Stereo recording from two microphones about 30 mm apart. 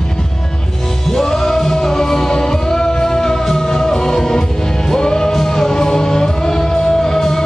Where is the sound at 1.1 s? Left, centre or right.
Centre; by 7.0 s left.